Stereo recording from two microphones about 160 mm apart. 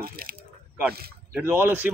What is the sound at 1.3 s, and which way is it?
Speech, 15° right (ahead or behind).